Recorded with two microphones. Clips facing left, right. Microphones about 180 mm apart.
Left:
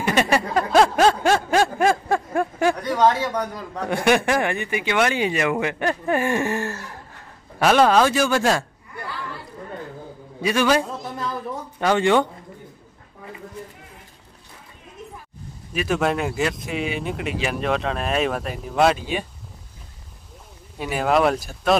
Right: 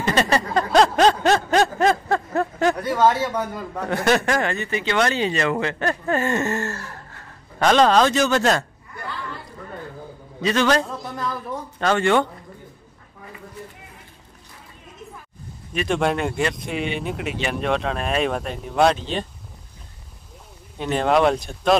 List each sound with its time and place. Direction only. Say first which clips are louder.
0.0 s a sound: even; 10° left (ahead or behind)
2.8 s speech: right 1 dB; 5° right (ahead or behind)
3.8 s speech: left 1 dB; 15° left (ahead or behind)
10.4 s speech: even; 10° left (ahead or behind)
15.7 s speech: even; 5° left (ahead or behind)
20.7 s speech: right 1 dB; 5° left (ahead or behind)